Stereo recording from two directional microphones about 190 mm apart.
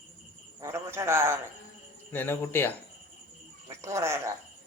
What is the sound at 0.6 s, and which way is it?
Speech, 15° right (ahead or behind).